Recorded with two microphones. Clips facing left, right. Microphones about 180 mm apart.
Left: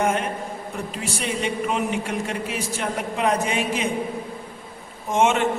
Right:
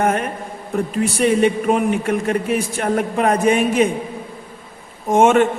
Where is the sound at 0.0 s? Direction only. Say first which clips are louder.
Right 4 dB; 50° right (ahead or behind).